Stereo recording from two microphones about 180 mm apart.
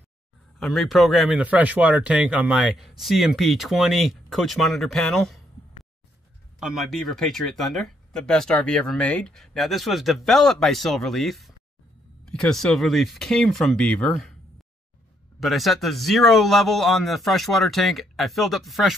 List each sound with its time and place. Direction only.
0.6 s speech: centre (ahead or behind)
6.6 s speech: centre (ahead or behind)
15.4 s speech: centre (ahead or behind)